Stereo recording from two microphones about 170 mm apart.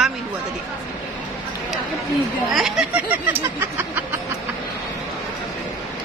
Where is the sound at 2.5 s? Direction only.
5° right (ahead or behind).